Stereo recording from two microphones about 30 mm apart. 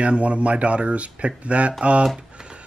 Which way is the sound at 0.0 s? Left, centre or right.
Right.